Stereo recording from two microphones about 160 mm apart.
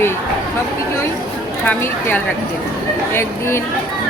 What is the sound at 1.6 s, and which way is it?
A man's voice, 10° left (ahead or behind).